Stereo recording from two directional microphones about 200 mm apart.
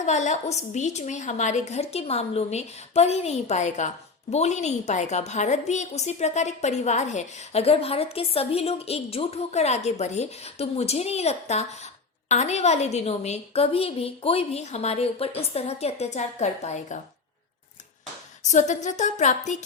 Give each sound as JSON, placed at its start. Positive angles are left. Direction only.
{"t": 0.0, "sound": "a woman's voice", "side_deg": 35}
{"t": 18.4, "sound": "a woman's voice", "side_deg": 35}